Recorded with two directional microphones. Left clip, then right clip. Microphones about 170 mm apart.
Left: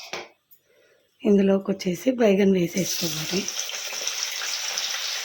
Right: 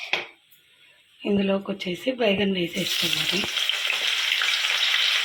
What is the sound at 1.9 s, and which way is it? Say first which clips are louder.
Speech: left 2 dB; 75° left (ahead or behind).